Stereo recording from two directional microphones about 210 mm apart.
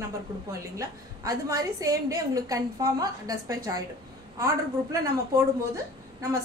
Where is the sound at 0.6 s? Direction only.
15° right (ahead or behind).